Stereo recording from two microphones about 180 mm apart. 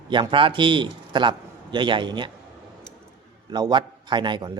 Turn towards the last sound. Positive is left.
turn(degrees=-25)  # may be behind; listen again after turning